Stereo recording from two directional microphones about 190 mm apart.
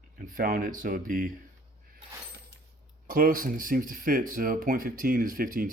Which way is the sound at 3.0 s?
50° right (ahead or behind).